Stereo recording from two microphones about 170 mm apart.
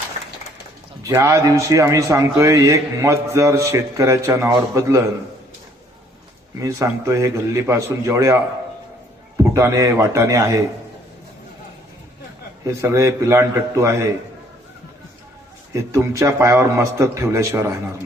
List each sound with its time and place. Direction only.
1.0 s a man's voice: 15° right (ahead or behind)
6.6 s a man's voice: 20° right (ahead or behind)
9.4 s a man's voice: 15° right (ahead or behind)
12.6 s a man's voice: 15° right (ahead or behind)
15.7 s a man's voice: 15° right (ahead or behind)